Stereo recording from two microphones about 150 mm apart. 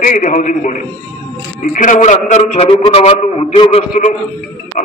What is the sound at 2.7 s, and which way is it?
A man's voice, 35° left (ahead or behind).